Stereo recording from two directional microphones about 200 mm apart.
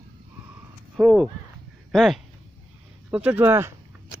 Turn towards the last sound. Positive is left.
turn(degrees=-10)  # may be behind; listen again after turning